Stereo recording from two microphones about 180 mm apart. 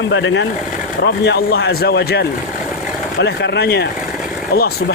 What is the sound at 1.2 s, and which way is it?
Speech, 70° left (ahead or behind).